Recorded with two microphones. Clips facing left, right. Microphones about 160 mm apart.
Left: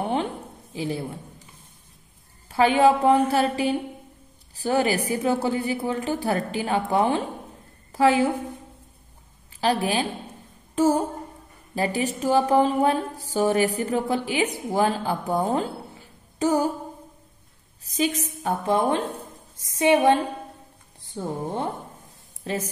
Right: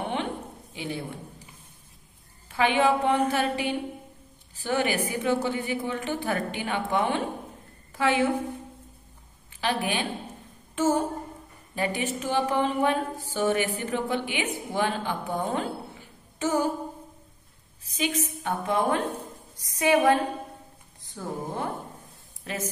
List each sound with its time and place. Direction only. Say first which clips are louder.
0.0 s a sound: left 5 dB; 35° left (ahead or behind)
0.7 s speech: left 5 dB; 35° left (ahead or behind)
2.5 s a woman's voice: left 5 dB; 35° left (ahead or behind)
9.6 s a woman's voice: left 5 dB; 35° left (ahead or behind)
16.3 s music: left 4 dB; 35° left (ahead or behind)
17.8 s a woman's voice: left 4 dB; 40° left (ahead or behind)